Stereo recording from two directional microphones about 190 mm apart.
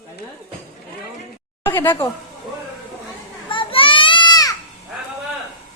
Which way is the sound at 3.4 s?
25° left (ahead or behind).